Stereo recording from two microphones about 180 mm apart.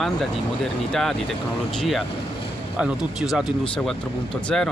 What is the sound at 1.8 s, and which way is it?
Speech, centre (ahead or behind).